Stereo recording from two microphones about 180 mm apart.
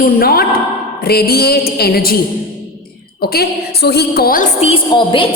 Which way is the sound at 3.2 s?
60° left (ahead or behind).